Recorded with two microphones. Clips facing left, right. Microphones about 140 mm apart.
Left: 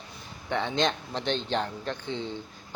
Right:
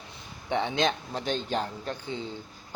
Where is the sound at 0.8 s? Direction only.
5° right (ahead or behind).